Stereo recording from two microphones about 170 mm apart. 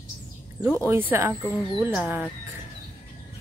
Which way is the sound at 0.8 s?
10° right (ahead or behind).